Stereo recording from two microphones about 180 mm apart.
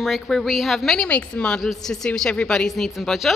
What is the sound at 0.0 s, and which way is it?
A woman's voice, centre (ahead or behind).